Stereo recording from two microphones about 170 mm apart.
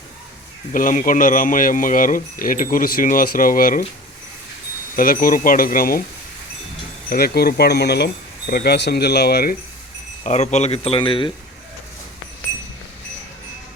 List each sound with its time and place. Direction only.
0.7 s speech: 50° left (ahead or behind)
4.9 s speech: 55° left (ahead or behind)
7.1 s speech: 65° left (ahead or behind)
10.2 s speech: 40° left (ahead or behind)